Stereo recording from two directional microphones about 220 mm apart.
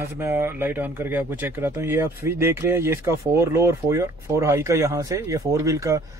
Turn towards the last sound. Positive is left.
turn(degrees=-15)  # may be behind; listen again after turning